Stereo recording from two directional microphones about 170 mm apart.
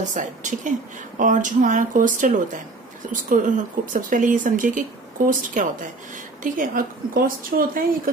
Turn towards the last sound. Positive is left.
turn(degrees=-55)  # may be behind; listen again after turning